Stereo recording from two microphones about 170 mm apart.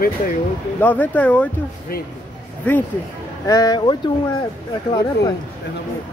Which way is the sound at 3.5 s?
20° left (ahead or behind).